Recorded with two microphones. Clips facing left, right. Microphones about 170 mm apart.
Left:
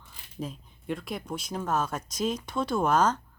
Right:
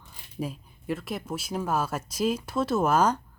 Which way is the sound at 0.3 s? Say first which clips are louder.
Right 3 dB; 5° right (ahead or behind).